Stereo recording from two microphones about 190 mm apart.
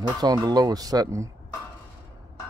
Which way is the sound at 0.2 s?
20° right (ahead or behind).